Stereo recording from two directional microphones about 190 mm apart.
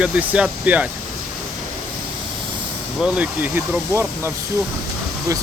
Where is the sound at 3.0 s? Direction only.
5° right (ahead or behind).